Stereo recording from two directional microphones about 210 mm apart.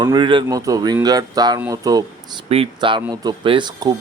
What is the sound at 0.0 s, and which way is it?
Speech, 20° right (ahead or behind).